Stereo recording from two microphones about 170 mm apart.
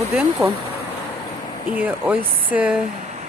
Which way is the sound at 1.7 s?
10° right (ahead or behind).